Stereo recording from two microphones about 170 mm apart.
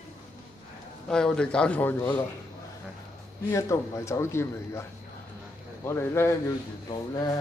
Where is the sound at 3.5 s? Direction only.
15° left (ahead or behind).